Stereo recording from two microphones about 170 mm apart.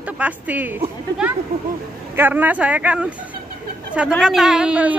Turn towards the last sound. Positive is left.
turn(degrees=-5)  # may be behind; listen again after turning